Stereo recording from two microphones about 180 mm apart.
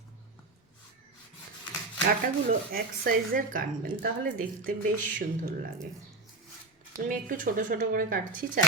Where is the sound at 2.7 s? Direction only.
55° right (ahead or behind).